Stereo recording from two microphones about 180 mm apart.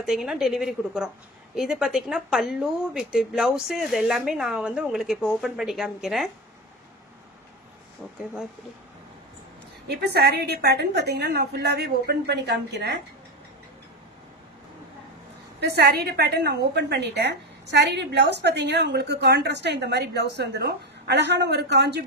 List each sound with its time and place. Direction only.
0.0 s a woman's voice: centre (ahead or behind)
9.8 s a woman's voice: 65° right (ahead or behind)
15.6 s a woman's voice: 65° right (ahead or behind)